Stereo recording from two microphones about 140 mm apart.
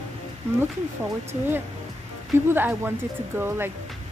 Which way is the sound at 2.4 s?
15° right (ahead or behind).